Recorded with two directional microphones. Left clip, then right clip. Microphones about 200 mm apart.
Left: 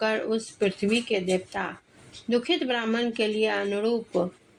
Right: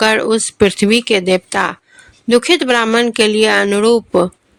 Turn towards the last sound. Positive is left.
turn(degrees=-50)  # may be behind; listen again after turning